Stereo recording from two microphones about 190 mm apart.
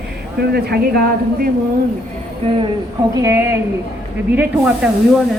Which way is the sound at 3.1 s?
15° right (ahead or behind).